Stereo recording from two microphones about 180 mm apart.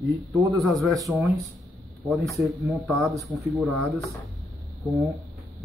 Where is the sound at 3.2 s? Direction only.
15° right (ahead or behind).